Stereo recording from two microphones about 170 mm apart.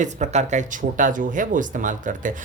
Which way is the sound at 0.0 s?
45° right (ahead or behind).